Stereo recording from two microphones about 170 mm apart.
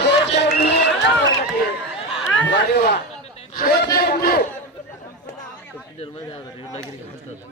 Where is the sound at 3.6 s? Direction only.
65° left (ahead or behind).